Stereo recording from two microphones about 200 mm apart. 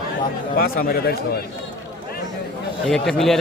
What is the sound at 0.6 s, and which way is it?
Speech, 45° left (ahead or behind).